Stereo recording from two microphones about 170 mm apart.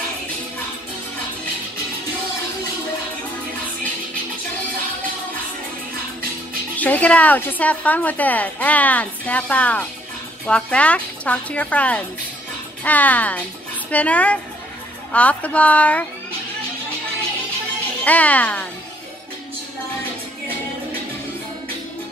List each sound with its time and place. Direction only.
6.8 s a woman's voice: 10° left (ahead or behind)
18.0 s a woman's voice: 10° left (ahead or behind)